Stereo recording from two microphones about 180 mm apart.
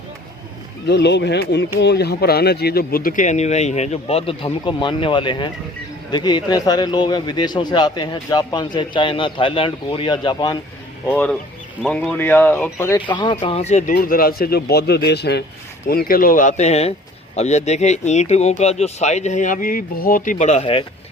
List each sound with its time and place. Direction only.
0.9 s a man's voice: 75° left (ahead or behind); by 10.6 s 25° left (ahead or behind)
11.8 s speech: 5° left (ahead or behind)
13.1 s a man's voice: 25° left (ahead or behind)
13.4 s speech: 35° left (ahead or behind)
13.9 s speech: 55° left (ahead or behind)
15.9 s speech: 55° left (ahead or behind); by 20.8 s 35° left (ahead or behind)